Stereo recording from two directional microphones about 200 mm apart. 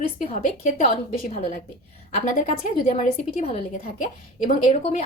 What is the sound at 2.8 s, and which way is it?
A woman's voice, 30° left (ahead or behind).